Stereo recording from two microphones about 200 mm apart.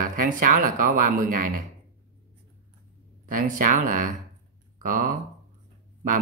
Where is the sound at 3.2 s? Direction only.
40° right (ahead or behind).